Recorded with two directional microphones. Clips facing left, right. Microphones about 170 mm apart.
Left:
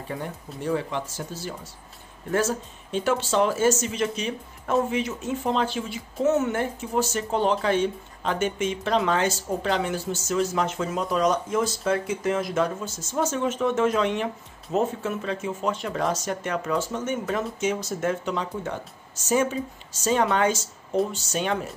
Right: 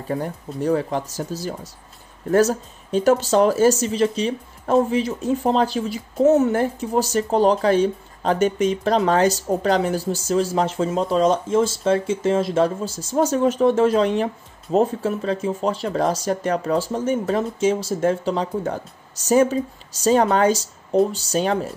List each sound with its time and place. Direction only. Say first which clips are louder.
0.1 s speech: right 8 dB; 40° right (ahead or behind)